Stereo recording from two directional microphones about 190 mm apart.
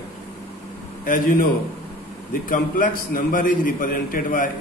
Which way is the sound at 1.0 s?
45° left (ahead or behind).